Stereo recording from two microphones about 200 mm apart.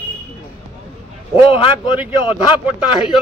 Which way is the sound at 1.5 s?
25° left (ahead or behind).